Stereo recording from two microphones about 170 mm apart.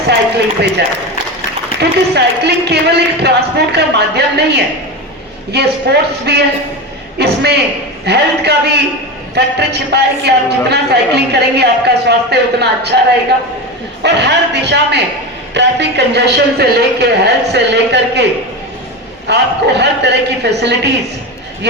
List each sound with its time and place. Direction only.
0.1 s a woman's voice: 80° right
1.8 s a man's voice: 75° right (ahead or behind)
14.0 s a woman's voice: 80° right
17.5 s a man's voice: 90° right
19.3 s a woman's voice: 85° right